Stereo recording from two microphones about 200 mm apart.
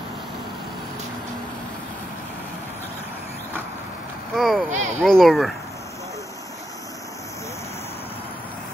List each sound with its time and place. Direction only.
4.4 s speech: centre (ahead or behind)
4.6 s speech: 35° right (ahead or behind)
5.0 s speech: centre (ahead or behind)